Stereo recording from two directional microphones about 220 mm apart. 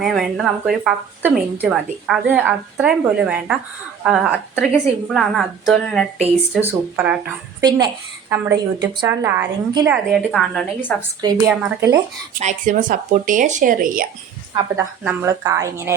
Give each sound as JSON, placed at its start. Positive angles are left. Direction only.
{"t": 0.0, "sound": "speech", "side_deg": 0}
{"t": 8.3, "sound": "a woman's voice", "side_deg": -15}
{"t": 10.1, "sound": "a woman's voice", "side_deg": 0}
{"t": 11.4, "sound": "a woman's voice", "side_deg": -10}
{"t": 12.4, "sound": "speech", "side_deg": -35}
{"t": 14.8, "sound": "a woman's voice", "side_deg": -10}